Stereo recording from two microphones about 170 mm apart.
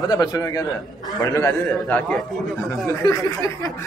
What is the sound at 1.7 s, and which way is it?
Speech, 5° left (ahead or behind).